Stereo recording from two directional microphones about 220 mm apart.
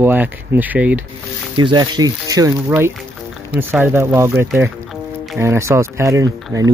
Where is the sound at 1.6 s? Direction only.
20° right (ahead or behind).